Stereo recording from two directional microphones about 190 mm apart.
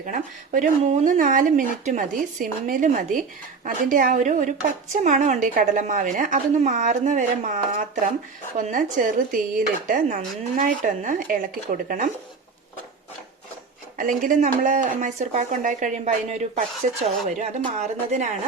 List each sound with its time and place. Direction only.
0.0 s speech: 45° right (ahead or behind)
14.0 s speech: 45° right (ahead or behind)